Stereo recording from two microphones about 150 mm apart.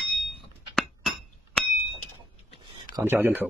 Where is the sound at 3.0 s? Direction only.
15° right (ahead or behind).